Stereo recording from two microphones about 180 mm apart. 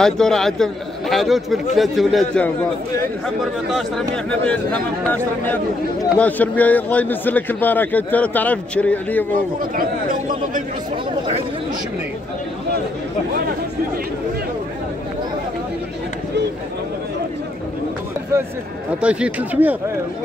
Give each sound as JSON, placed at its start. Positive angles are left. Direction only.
{"t": 0.0, "sound": "a man's voice", "side_deg": 5}
{"t": 4.1, "sound": "a man's voice", "side_deg": 5}
{"t": 9.8, "sound": "a man's voice", "side_deg": -50}
{"t": 18.9, "sound": "speech", "side_deg": -5}